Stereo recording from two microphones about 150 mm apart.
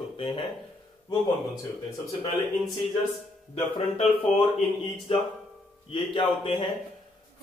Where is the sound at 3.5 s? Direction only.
40° left (ahead or behind).